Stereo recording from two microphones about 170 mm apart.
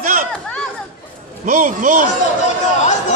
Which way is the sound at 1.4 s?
50° right (ahead or behind).